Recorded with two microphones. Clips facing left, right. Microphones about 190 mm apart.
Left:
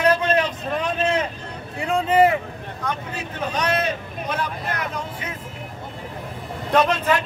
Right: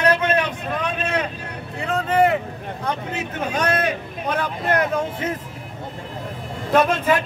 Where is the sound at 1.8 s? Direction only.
10° left (ahead or behind).